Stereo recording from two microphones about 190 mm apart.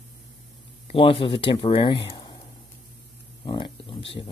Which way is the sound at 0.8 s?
30° left (ahead or behind).